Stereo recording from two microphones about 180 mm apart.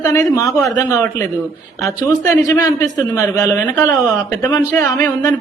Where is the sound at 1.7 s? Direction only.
Centre (ahead or behind).